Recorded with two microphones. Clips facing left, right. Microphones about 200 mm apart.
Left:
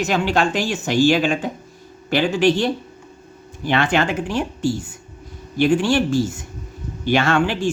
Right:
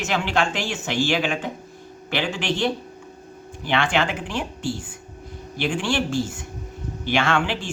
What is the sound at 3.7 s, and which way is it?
A man's voice, 40° left (ahead or behind).